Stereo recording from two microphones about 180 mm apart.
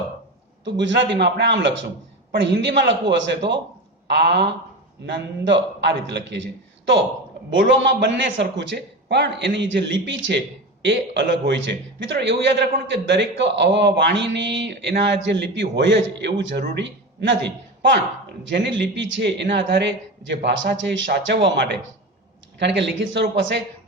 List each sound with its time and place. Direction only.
0.6 s speech: 80° right
8.0 s a man's voice: 80° right